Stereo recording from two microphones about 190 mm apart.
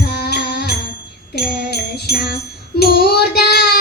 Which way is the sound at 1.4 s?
55° left (ahead or behind).